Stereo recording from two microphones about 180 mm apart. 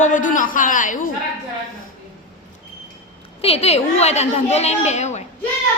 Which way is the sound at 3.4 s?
35° left (ahead or behind).